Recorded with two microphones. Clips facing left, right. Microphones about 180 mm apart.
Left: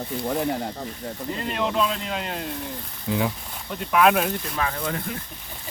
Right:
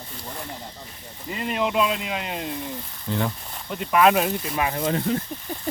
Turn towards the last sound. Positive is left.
turn(degrees=-25)  # may be behind; listen again after turning